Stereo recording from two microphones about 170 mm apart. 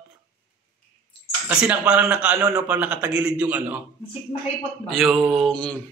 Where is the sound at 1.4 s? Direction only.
10° right (ahead or behind).